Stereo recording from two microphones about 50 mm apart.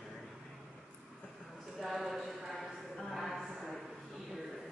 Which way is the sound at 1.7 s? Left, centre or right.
Centre.